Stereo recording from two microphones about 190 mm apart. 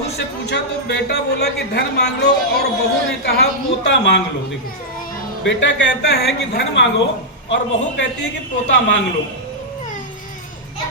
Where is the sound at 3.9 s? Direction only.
65° left (ahead or behind).